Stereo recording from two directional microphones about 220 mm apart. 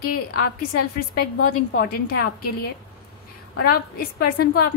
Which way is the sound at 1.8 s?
45° left (ahead or behind).